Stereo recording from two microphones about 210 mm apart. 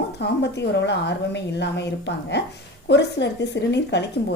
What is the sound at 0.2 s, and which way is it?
A woman's voice, 55° left (ahead or behind).